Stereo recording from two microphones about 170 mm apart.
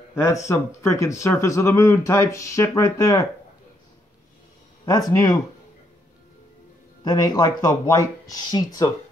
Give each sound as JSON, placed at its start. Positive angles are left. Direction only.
{"t": 0.1, "sound": "speech", "side_deg": 15}
{"t": 4.8, "sound": "speech", "side_deg": 20}
{"t": 7.1, "sound": "speech", "side_deg": 25}